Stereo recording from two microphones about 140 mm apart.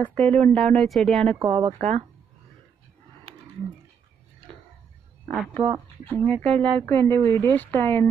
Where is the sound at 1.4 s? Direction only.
40° right (ahead or behind).